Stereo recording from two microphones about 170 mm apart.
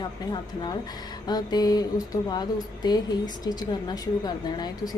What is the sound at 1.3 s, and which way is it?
Speech, 25° left (ahead or behind).